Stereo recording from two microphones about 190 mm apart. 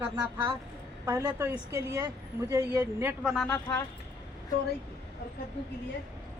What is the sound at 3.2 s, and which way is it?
Speech, centre (ahead or behind).